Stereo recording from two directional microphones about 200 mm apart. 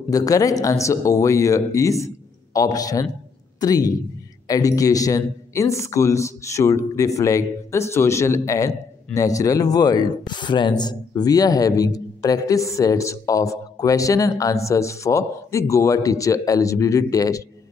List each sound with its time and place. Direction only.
0.1 s a man's voice: 15° left (ahead or behind)